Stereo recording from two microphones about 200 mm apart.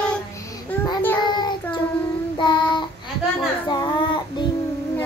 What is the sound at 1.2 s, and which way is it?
Child singing, 20° left (ahead or behind).